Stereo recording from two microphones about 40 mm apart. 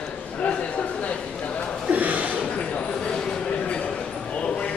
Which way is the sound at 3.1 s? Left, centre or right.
Centre.